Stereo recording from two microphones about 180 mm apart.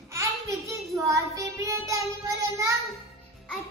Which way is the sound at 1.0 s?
15° right (ahead or behind).